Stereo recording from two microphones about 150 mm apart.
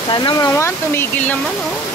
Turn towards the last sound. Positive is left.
turn(degrees=15)  # may be behind; listen again after turning